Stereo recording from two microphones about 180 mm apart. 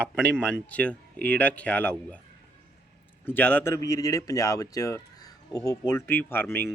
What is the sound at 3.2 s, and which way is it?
Speech, 10° left (ahead or behind).